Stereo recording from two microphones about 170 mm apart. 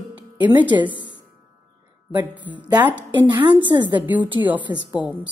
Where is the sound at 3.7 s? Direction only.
30° right (ahead or behind).